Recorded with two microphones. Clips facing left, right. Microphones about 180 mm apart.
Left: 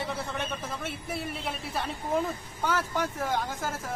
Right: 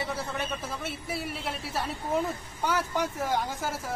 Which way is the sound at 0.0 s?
5° right (ahead or behind).